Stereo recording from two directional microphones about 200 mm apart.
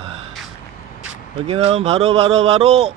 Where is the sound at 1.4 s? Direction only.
30° right (ahead or behind).